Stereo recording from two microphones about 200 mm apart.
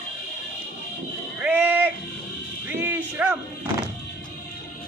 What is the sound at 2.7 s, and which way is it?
Music, 10° right (ahead or behind).